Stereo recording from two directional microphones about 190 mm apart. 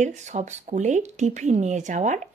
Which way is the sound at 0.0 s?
40° right (ahead or behind).